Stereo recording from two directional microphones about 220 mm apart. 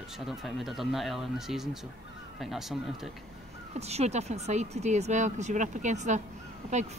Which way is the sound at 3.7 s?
30° right (ahead or behind).